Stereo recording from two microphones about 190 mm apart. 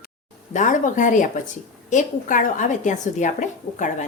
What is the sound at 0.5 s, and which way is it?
Speech, 40° left (ahead or behind).